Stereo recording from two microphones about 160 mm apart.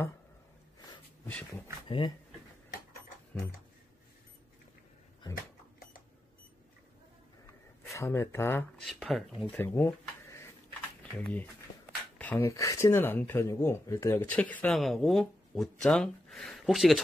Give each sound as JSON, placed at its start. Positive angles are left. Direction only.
{"t": 1.2, "sound": "dog", "side_deg": 10}
{"t": 1.9, "sound": "speech", "side_deg": 30}
{"t": 7.9, "sound": "speech", "side_deg": 15}
{"t": 8.8, "sound": "speech", "side_deg": 0}
{"t": 9.6, "sound": "a sound", "side_deg": 15}
{"t": 11.0, "sound": "speech", "side_deg": 5}